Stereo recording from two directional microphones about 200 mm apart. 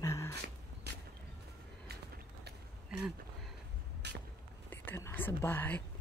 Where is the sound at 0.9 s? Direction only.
55° right (ahead or behind).